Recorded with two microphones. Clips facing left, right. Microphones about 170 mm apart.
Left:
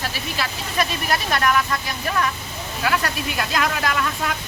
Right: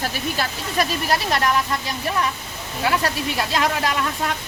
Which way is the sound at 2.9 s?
30° right (ahead or behind).